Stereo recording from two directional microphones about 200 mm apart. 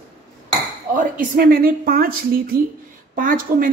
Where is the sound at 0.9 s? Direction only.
45° right (ahead or behind).